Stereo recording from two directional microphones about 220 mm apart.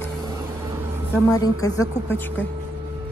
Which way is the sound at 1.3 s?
15° left (ahead or behind).